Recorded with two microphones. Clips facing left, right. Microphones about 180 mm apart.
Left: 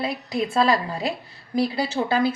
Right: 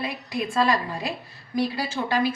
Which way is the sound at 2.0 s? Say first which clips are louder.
Left 4 dB; 30° left (ahead or behind).